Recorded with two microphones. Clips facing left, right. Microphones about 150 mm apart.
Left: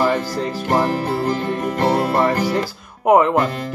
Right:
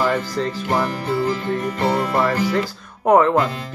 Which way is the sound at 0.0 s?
35° left (ahead or behind).